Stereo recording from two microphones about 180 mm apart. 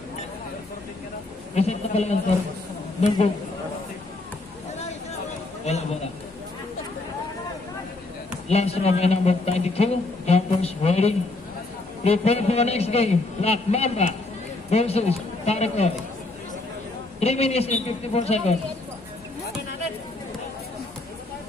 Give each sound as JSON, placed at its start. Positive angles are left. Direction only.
{"t": 1.5, "sound": "speech", "side_deg": 35}
{"t": 5.7, "sound": "speech", "side_deg": 40}
{"t": 8.5, "sound": "speech", "side_deg": 35}
{"t": 17.2, "sound": "speech", "side_deg": 35}